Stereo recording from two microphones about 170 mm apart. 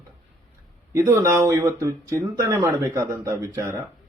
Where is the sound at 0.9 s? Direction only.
15° right (ahead or behind).